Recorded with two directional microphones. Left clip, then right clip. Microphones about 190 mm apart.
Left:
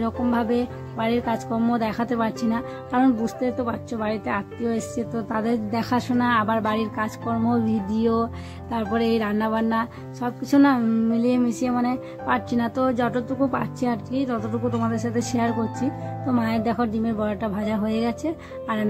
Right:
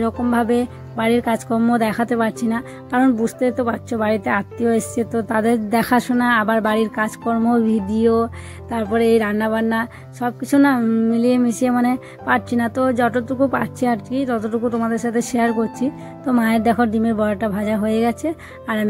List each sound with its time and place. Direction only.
0.0 s speech: 20° right (ahead or behind)